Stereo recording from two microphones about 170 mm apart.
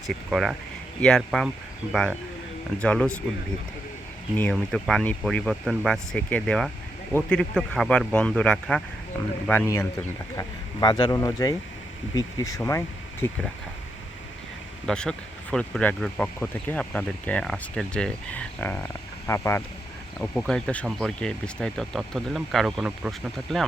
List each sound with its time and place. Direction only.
0.1 s speech: centre (ahead or behind)
4.5 s speech: 5° left (ahead or behind)
14.8 s speech: 5° left (ahead or behind)
20.1 s speech: 5° left (ahead or behind)